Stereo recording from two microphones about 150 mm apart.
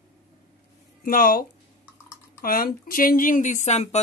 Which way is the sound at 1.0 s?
70° left (ahead or behind).